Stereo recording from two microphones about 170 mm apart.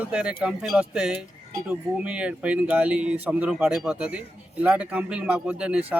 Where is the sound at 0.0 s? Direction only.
5° right (ahead or behind).